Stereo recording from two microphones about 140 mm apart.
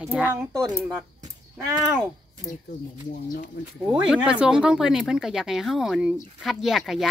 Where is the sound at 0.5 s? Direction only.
25° right (ahead or behind).